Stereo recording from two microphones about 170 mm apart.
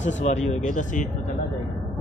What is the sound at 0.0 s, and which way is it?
Speech, 45° left (ahead or behind).